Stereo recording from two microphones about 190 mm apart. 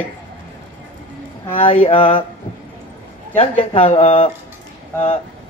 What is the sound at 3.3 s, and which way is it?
Speech, 30° left (ahead or behind).